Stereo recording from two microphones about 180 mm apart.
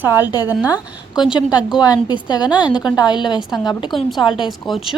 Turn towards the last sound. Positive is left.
turn(degrees=0)  # may be behind; listen again after turning